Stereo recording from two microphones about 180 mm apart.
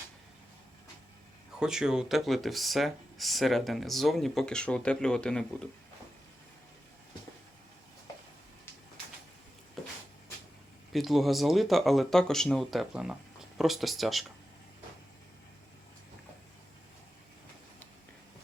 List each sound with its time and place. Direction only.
1.5 s speech: 5° right (ahead or behind)
10.9 s speech: centre (ahead or behind)